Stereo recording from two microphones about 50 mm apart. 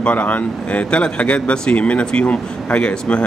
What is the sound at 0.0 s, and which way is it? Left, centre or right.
Speech, left.